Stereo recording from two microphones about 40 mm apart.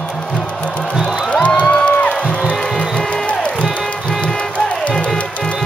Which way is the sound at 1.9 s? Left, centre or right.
Left.